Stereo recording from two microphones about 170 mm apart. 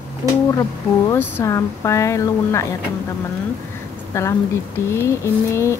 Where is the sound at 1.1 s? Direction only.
15° left (ahead or behind).